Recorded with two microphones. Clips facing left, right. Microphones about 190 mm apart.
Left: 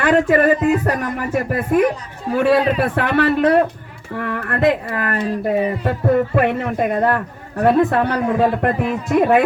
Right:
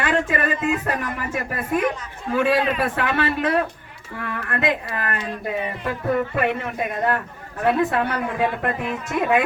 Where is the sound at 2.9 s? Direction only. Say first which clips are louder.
Left 6 dB; 55° left (ahead or behind); by 7.0 s 40° left (ahead or behind).